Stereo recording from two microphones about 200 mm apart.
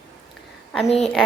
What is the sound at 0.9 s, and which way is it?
Speech, 5° left (ahead or behind).